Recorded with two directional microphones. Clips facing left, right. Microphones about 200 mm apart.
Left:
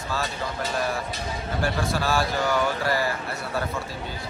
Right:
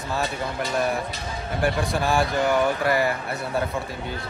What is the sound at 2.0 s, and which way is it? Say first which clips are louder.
Speech: right 4 dB; 15° right (ahead or behind).